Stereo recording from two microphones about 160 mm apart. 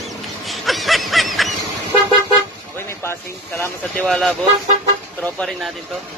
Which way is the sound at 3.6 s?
5° left (ahead or behind).